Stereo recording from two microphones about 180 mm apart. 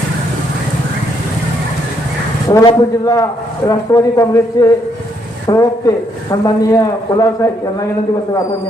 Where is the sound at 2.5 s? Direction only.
20° left (ahead or behind).